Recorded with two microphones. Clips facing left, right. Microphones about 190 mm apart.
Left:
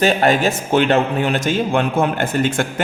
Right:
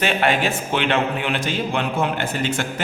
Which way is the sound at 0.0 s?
40° left (ahead or behind).